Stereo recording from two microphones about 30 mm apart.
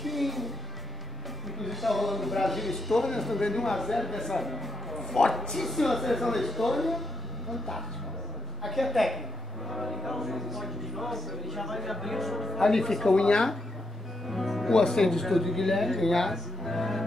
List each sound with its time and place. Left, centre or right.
0.0 s music: centre
1.6 s speech: centre
8.6 s speech: centre
13.1 s speech: left
14.2 s music: centre
14.7 s speech: centre